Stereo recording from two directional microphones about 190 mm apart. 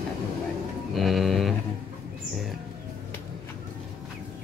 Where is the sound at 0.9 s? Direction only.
Centre (ahead or behind).